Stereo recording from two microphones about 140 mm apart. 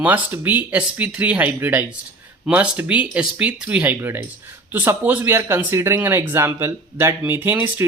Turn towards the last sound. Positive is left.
turn(degrees=-15)  # may be behind; listen again after turning